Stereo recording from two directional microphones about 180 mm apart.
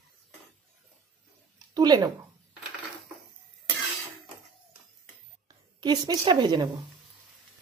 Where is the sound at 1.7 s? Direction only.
25° right (ahead or behind).